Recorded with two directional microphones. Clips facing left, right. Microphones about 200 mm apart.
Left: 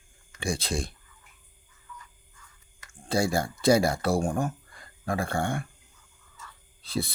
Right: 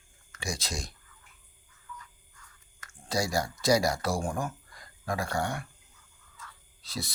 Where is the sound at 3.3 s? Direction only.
30° left (ahead or behind).